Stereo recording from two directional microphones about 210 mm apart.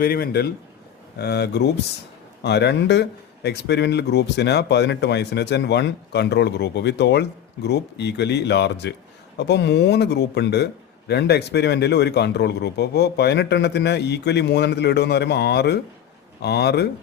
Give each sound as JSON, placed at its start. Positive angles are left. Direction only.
{"t": 0.0, "sound": "speech", "side_deg": 45}